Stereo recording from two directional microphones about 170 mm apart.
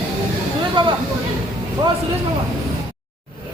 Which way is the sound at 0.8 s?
30° right (ahead or behind).